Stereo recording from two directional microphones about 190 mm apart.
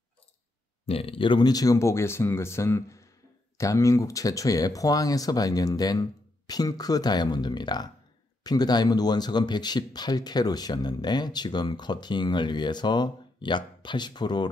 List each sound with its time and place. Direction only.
0.8 s speech: 30° left (ahead or behind)